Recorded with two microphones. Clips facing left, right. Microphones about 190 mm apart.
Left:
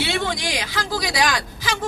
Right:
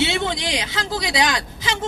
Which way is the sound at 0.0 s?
25° right (ahead or behind).